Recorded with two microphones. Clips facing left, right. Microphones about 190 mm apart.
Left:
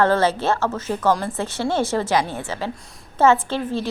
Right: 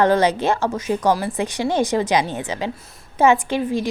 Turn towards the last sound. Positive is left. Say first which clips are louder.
# right 3 dB
turn(degrees=-15)  # may be behind; listen again after turning